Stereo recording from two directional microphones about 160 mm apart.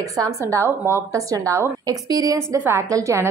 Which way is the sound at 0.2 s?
15° right (ahead or behind).